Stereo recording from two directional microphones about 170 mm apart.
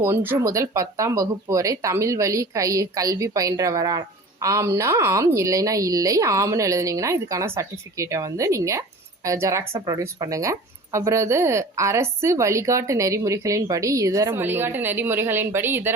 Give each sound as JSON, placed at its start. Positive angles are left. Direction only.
{"t": 0.0, "sound": "a woman's voice", "side_deg": -15}